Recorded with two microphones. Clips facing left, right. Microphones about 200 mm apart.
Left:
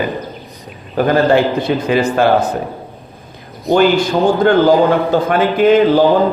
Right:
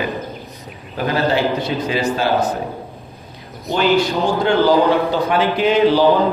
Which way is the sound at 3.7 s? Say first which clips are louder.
Left 5 dB; 50° left (ahead or behind).